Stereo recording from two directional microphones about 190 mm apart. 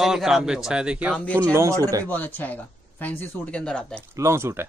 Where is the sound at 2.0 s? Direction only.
10° left (ahead or behind).